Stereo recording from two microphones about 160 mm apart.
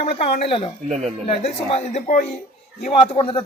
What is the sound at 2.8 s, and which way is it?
Speech, 35° left (ahead or behind).